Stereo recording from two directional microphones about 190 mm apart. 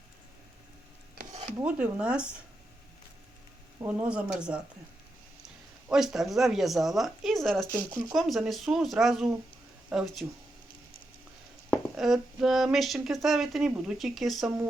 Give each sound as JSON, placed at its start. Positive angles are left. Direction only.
{"t": 1.6, "sound": "speech", "side_deg": -5}
{"t": 3.8, "sound": "speech", "side_deg": -10}
{"t": 5.9, "sound": "speech", "side_deg": 0}
{"t": 7.7, "sound": "speech", "side_deg": -20}
{"t": 8.1, "sound": "speech", "side_deg": 0}
{"t": 11.7, "sound": "speech", "side_deg": 0}